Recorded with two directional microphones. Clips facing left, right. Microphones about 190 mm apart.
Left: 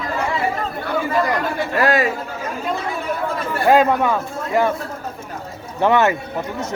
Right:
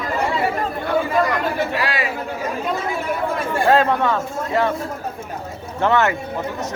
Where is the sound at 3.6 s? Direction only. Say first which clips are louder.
Left 2 dB; 10° left (ahead or behind).